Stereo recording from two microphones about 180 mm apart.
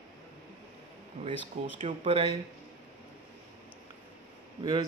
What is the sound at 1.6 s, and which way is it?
Speech, 40° right (ahead or behind).